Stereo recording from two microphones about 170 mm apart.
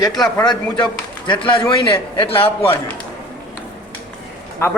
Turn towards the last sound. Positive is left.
turn(degrees=15)  # may be behind; listen again after turning